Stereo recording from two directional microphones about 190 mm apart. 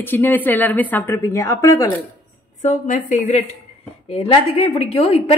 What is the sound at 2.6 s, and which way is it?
A woman's voice, 40° left (ahead or behind).